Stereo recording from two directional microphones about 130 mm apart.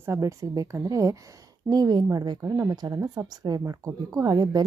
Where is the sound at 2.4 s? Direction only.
20° right (ahead or behind).